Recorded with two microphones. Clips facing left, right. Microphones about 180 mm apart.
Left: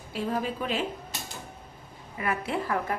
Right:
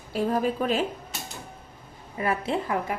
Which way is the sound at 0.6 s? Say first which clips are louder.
Right 5 dB; 50° right (ahead or behind).